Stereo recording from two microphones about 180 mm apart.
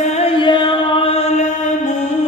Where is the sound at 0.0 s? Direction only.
35° left (ahead or behind).